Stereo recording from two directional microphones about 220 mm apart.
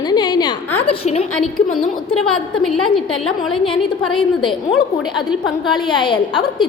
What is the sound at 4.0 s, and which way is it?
Speech, centre (ahead or behind).